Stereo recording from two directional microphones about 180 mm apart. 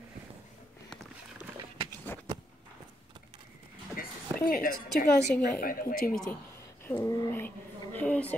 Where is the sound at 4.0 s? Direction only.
55° left (ahead or behind).